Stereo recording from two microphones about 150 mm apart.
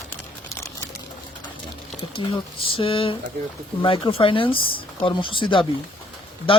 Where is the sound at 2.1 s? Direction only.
35° left (ahead or behind).